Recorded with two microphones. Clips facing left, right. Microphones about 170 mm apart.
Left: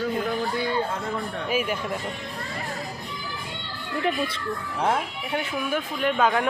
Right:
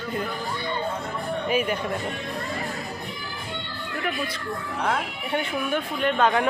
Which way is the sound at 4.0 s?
30° left (ahead or behind).